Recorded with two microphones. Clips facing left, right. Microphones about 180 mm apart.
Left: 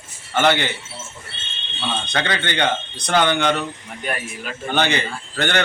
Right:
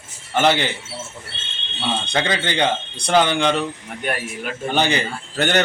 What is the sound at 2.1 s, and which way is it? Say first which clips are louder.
Speech: right 2 dB; 25° right (ahead or behind).